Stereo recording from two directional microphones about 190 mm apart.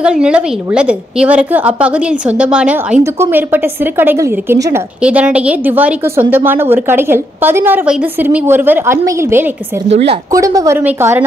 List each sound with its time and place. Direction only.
0.0 s a woman's voice: 5° right (ahead or behind)
9.8 s a woman's voice: 35° right (ahead or behind)
10.3 s a woman's voice: 20° right (ahead or behind)